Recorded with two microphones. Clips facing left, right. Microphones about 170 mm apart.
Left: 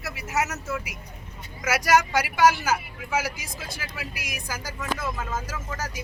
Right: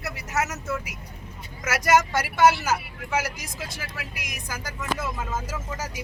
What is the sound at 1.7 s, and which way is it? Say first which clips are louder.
Speech: even; 5° left (ahead or behind).